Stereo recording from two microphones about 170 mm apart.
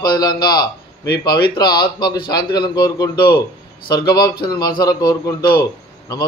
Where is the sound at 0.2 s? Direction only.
25° left (ahead or behind).